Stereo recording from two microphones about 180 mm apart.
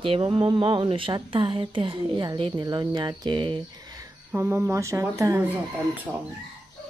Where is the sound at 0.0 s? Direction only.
30° right (ahead or behind).